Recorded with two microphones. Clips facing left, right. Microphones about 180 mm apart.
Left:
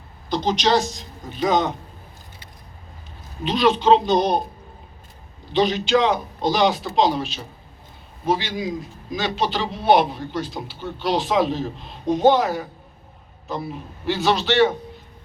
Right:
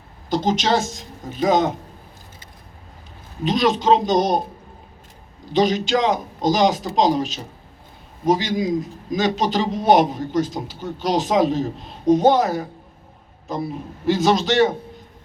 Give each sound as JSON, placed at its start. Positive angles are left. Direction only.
{"t": 0.3, "sound": "a man's voice", "side_deg": -45}
{"t": 3.4, "sound": "a man's voice", "side_deg": -40}
{"t": 5.5, "sound": "a man's voice", "side_deg": -40}
{"t": 14.1, "sound": "a man's voice", "side_deg": -40}